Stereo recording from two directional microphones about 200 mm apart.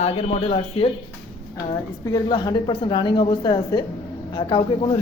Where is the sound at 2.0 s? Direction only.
20° left (ahead or behind).